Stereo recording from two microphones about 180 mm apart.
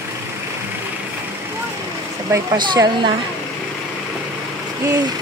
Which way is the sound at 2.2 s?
20° right (ahead or behind).